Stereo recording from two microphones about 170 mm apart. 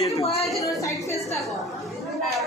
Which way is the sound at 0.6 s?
20° left (ahead or behind).